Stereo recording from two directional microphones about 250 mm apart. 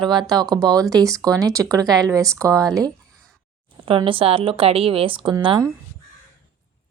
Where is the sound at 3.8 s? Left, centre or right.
Right.